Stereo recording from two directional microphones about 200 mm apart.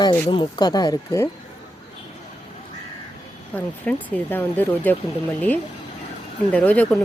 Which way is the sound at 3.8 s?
10° left (ahead or behind).